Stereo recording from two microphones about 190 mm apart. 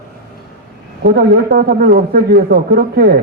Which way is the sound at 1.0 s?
55° right (ahead or behind).